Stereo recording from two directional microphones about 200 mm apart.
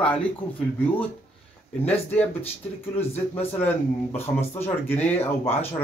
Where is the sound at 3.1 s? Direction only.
30° left (ahead or behind).